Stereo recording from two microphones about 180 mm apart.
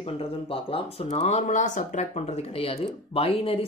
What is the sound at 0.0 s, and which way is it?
Speech, 30° left (ahead or behind).